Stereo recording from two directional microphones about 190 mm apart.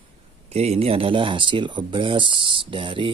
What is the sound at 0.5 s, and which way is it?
Speech, 35° right (ahead or behind).